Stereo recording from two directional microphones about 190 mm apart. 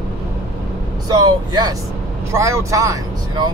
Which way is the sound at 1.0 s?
20° right (ahead or behind).